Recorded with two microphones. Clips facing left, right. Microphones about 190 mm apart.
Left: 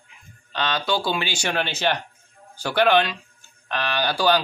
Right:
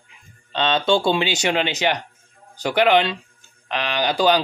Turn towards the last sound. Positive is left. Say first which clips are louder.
# right 3 dB
turn(degrees=-15)  # may be behind; listen again after turning